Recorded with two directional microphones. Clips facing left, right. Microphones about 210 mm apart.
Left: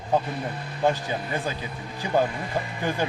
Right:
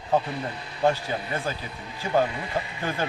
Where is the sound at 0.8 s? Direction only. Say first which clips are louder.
Even; 15° left (ahead or behind).